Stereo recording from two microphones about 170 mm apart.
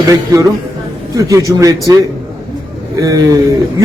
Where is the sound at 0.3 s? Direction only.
20° right (ahead or behind).